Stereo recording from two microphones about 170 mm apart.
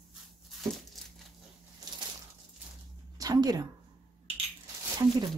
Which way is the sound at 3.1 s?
20° right (ahead or behind).